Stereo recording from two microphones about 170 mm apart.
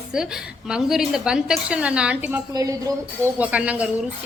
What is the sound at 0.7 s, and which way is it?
Speech, 5° right (ahead or behind).